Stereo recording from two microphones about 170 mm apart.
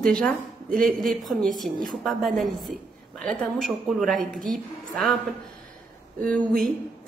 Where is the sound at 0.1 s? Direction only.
5° left (ahead or behind).